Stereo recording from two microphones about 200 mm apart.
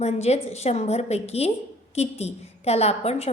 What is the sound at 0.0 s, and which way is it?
A woman's voice, 35° left (ahead or behind).